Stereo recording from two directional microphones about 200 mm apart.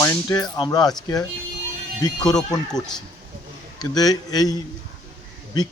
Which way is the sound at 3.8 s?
20° left (ahead or behind).